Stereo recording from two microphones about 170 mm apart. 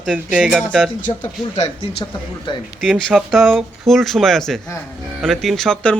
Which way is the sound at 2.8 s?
Centre (ahead or behind).